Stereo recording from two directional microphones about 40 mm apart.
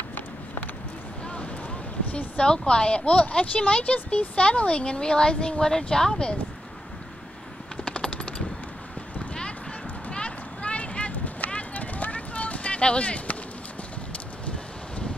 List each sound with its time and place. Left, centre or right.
1.2 s boat: left
2.1 s speech: left
5.6 s speech: centre
7.8 s machine gun: left
10.1 s a sound: left